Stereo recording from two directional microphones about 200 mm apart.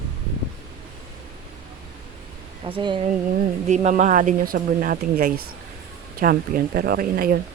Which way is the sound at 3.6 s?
35° right (ahead or behind).